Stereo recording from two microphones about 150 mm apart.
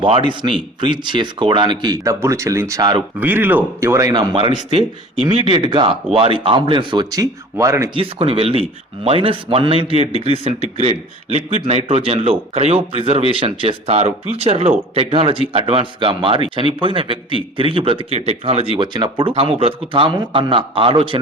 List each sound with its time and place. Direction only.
0.0 s a man's voice: 35° right (ahead or behind)
3.2 s a man's voice: 10° right (ahead or behind)
7.9 s a man's voice: 40° right (ahead or behind)